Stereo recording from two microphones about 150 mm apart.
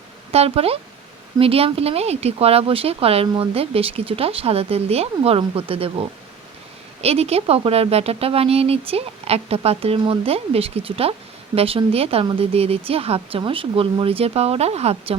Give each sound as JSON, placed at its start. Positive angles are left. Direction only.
{"t": 0.3, "sound": "speech", "side_deg": -40}